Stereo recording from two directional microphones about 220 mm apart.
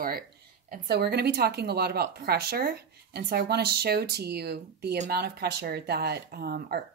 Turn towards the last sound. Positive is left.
turn(degrees=-45)  # may be behind; listen again after turning